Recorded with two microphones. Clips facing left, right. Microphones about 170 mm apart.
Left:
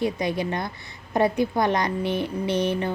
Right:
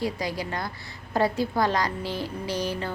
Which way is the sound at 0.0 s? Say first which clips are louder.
Left 4 dB; 20° left (ahead or behind).